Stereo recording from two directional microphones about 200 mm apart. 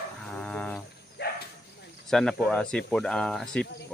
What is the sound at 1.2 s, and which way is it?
Bow-wow, 55° left (ahead or behind).